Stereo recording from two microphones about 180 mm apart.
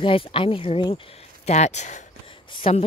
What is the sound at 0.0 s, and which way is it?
Speech, 30° left (ahead or behind).